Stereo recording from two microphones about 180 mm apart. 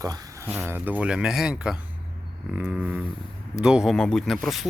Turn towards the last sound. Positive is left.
turn(degrees=0)  # may be behind; listen again after turning